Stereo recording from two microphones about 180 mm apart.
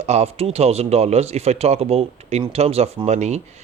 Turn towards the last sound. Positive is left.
turn(degrees=-40)  # may be behind; listen again after turning